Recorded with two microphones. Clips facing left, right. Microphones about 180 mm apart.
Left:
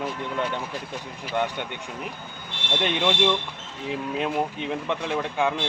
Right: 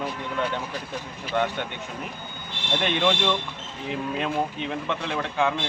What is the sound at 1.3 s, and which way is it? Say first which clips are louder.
Speech: right 1 dB; 10° left (ahead or behind).